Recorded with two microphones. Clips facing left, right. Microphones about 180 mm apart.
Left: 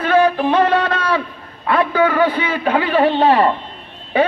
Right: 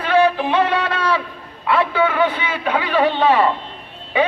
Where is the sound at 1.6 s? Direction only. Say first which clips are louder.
Left 2 dB; 40° left (ahead or behind).